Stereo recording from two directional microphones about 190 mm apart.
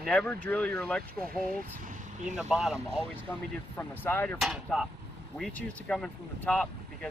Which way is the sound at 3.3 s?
15° left (ahead or behind).